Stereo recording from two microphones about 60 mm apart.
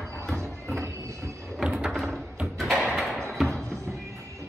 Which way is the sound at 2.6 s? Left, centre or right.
Centre.